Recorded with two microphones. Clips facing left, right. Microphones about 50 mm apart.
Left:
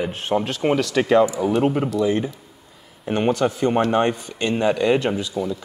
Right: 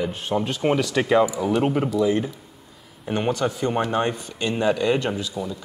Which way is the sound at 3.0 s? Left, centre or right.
Centre.